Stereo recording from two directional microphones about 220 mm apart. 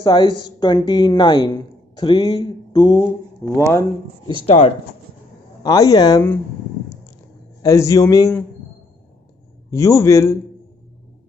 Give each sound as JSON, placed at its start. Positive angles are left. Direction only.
{"t": 0.0, "sound": "a woman's voice", "side_deg": 20}
{"t": 4.5, "sound": "a woman's voice", "side_deg": 25}
{"t": 7.6, "sound": "a man's voice", "side_deg": 15}
{"t": 9.7, "sound": "a man's voice", "side_deg": 15}